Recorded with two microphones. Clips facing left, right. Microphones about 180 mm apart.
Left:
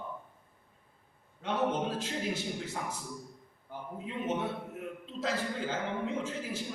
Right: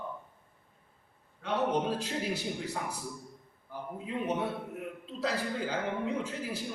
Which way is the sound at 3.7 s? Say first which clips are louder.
Right 2 dB; 20° left (ahead or behind).